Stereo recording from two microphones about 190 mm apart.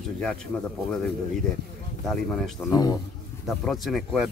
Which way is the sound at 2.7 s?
20° left (ahead or behind).